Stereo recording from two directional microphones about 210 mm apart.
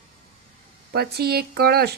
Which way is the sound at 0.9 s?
50° right (ahead or behind).